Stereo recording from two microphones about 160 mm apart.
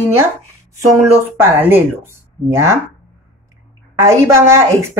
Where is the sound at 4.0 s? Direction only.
15° right (ahead or behind).